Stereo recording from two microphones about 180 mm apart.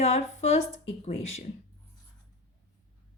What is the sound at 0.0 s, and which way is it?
A woman's voice, 35° left (ahead or behind).